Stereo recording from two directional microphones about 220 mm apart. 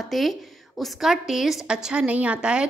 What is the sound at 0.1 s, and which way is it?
A woman's voice, centre (ahead or behind).